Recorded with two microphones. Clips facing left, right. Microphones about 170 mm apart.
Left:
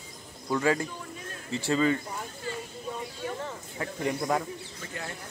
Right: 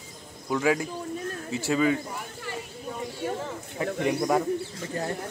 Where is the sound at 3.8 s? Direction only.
70° right (ahead or behind).